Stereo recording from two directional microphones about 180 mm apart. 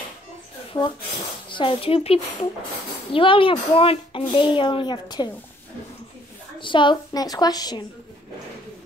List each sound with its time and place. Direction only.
1.5 s speech: 30° left (ahead or behind)
6.6 s speech: 25° left (ahead or behind)